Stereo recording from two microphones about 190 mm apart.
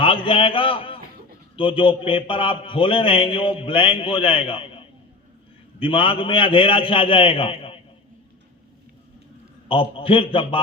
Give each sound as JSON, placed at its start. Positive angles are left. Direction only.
{"t": 0.0, "sound": "a man's voice", "side_deg": 25}
{"t": 9.6, "sound": "speech", "side_deg": 25}